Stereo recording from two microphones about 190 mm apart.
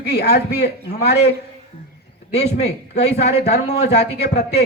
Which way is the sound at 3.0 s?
60° left (ahead or behind).